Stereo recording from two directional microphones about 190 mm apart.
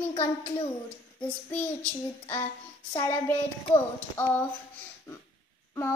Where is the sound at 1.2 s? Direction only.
10° left (ahead or behind).